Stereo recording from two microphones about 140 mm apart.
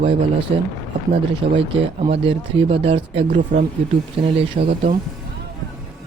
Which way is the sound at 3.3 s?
65° right (ahead or behind).